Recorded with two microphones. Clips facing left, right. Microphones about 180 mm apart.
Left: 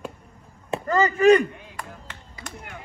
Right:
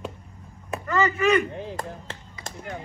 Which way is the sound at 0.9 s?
35° left (ahead or behind).